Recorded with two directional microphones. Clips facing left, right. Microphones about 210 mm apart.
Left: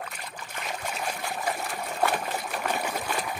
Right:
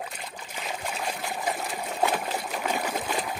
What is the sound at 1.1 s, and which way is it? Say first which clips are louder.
Trickle: right 1 dB; 5° right (ahead or behind).